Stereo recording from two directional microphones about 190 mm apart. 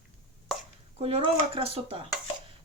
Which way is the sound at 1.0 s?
30° right (ahead or behind).